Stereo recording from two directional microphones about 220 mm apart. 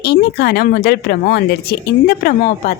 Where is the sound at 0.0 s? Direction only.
45° left (ahead or behind).